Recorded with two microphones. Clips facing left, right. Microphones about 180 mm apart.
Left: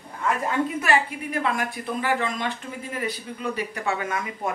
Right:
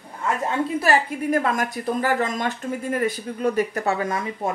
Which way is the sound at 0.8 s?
40° right (ahead or behind).